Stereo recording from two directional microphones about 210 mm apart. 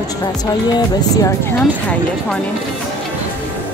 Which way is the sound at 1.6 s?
5° left (ahead or behind).